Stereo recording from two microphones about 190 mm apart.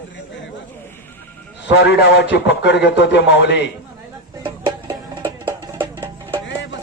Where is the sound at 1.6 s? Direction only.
70° left (ahead or behind).